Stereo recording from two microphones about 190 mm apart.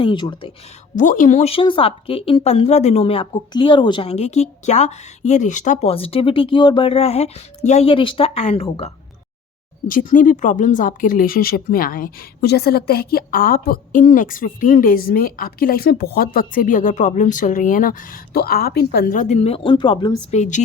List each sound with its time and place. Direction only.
0.0 s speech: 25° left (ahead or behind)
0.9 s speech: 45° left (ahead or behind)
9.8 s speech: 45° left (ahead or behind); by 20.1 s 25° left (ahead or behind)
20.3 s speech: 40° left (ahead or behind)